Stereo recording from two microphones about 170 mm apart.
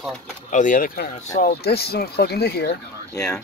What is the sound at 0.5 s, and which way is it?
Speech, 50° left (ahead or behind).